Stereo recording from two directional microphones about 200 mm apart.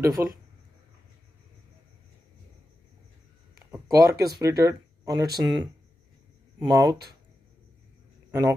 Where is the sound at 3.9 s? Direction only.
15° right (ahead or behind).